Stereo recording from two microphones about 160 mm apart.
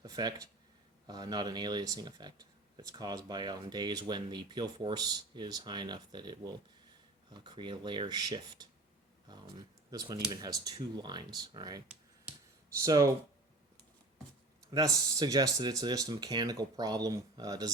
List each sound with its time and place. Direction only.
0.0 s speech: 25° right (ahead or behind)
12.8 s speech: 20° right (ahead or behind)
14.7 s speech: 20° right (ahead or behind)